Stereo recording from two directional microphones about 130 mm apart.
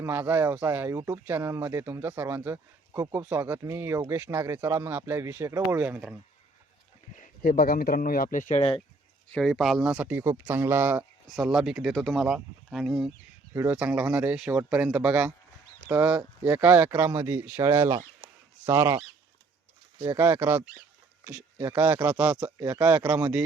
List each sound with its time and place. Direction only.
0.0 s speech: 15° right (ahead or behind)
7.2 s speech: 90° left; by 8.6 s 70° left (ahead or behind)
9.3 s speech: centre (ahead or behind); by 11.0 s 15° right (ahead or behind)
11.3 s speech: 5° right (ahead or behind)
13.5 s speech: 20° right (ahead or behind)
17.0 s speech: 25° right (ahead or behind)
20.0 s speech: 25° right (ahead or behind)
21.6 s speech: 25° right (ahead or behind)
22.0 s speech: 10° right (ahead or behind)